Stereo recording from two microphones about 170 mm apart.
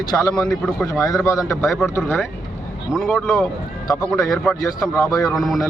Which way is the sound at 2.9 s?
Centre (ahead or behind).